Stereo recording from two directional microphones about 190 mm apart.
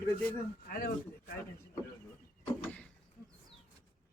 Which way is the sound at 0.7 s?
50° left (ahead or behind).